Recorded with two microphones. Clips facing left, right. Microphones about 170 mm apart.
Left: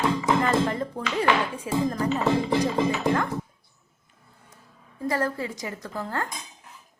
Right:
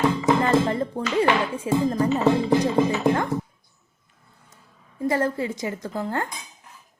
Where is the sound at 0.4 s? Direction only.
30° right (ahead or behind).